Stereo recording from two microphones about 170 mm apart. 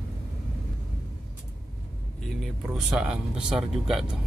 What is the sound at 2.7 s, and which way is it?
Speech, 5° right (ahead or behind).